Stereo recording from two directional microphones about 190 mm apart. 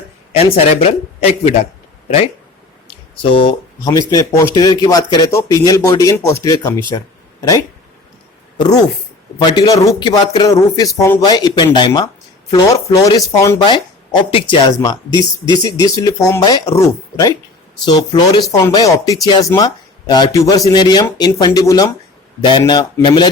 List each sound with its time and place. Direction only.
0.3 s a man's voice: 30° left (ahead or behind)
8.5 s speech: 20° left (ahead or behind)